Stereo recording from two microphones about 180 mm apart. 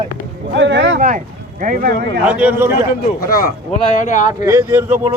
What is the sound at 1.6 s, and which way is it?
Speech, 55° right (ahead or behind).